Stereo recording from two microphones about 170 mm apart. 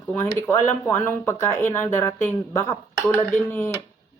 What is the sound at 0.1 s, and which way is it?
Speech, 10° left (ahead or behind).